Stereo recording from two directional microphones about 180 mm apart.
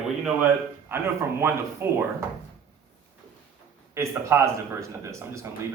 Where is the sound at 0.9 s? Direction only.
15° right (ahead or behind).